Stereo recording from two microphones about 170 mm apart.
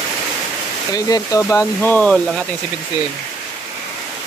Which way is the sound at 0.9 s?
20° left (ahead or behind).